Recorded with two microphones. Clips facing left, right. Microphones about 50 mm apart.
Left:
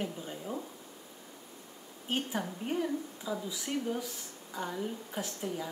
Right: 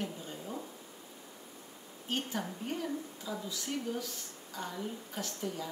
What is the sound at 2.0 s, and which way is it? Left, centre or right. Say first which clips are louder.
A woman's voice: left 2 dB; centre.